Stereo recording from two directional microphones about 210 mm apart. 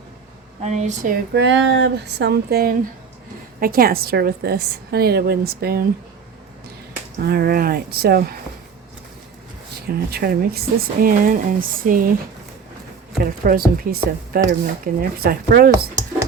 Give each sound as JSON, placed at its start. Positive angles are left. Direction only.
{"t": 0.6, "sound": "speech", "side_deg": -35}
{"t": 1.3, "sound": "a woman's voice", "side_deg": -55}
{"t": 7.2, "sound": "a woman's voice", "side_deg": -45}
{"t": 9.8, "sound": "a woman's voice", "side_deg": -50}
{"t": 13.1, "sound": "a woman's voice", "side_deg": -45}